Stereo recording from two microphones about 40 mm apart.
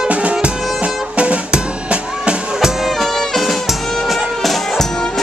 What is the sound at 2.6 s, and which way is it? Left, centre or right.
Music, centre.